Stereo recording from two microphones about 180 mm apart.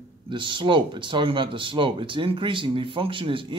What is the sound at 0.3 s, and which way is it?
Speech, 25° right (ahead or behind).